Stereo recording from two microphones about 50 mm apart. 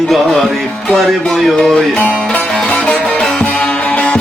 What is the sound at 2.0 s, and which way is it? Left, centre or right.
Music, left.